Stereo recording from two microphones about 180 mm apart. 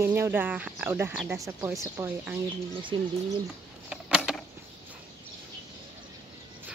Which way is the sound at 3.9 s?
5° right (ahead or behind).